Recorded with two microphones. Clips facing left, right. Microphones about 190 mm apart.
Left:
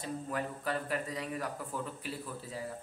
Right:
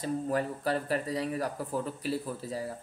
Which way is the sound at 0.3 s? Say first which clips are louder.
Right 5 dB; 35° right (ahead or behind).